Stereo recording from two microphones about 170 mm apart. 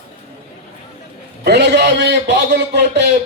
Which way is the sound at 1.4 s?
85° right.